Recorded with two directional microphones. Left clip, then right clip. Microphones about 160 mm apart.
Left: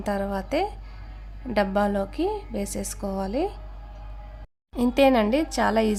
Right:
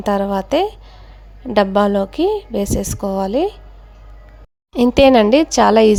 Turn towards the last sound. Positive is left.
turn(degrees=-35)  # may be behind; listen again after turning